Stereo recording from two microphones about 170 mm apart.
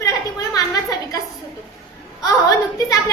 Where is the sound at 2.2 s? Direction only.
20° left (ahead or behind).